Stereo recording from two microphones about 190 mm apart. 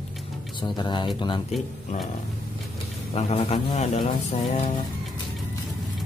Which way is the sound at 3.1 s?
30° left (ahead or behind).